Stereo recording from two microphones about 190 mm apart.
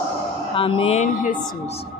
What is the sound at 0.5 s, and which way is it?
Music, 30° left (ahead or behind).